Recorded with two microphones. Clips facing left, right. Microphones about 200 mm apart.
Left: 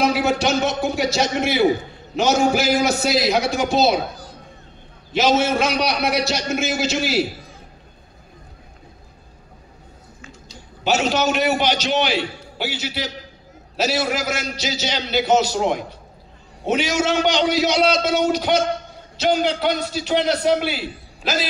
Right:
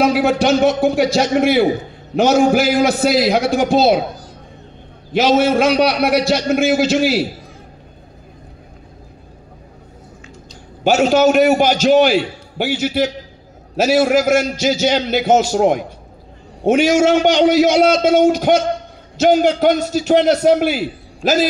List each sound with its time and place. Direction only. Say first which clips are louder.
0.0 s a man's voice: right 5 dB; 50° right (ahead or behind)
5.1 s a man's voice: right 5 dB; 55° right (ahead or behind)
10.8 s a man's voice: right 7 dB; 50° right (ahead or behind)